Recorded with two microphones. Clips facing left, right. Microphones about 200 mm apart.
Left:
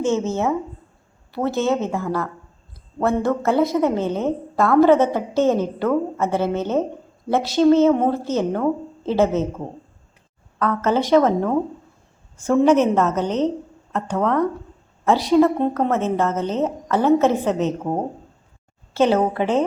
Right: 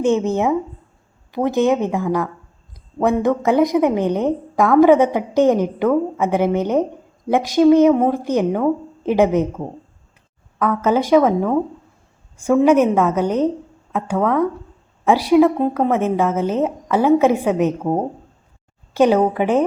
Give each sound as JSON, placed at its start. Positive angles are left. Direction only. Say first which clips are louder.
{"t": 0.0, "sound": "a woman's voice", "louder": "right 3 dB", "side_deg": -15}
{"t": 10.6, "sound": "a woman's voice", "louder": "right 2 dB", "side_deg": -10}
{"t": 18.9, "sound": "a woman's voice", "louder": "right 3 dB", "side_deg": -15}